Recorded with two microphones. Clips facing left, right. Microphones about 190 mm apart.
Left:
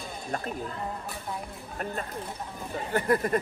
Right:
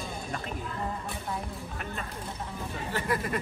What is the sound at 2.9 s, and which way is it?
Speech, 55° left (ahead or behind).